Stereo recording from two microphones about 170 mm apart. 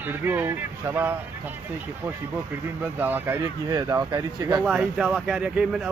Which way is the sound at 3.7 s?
20° right (ahead or behind).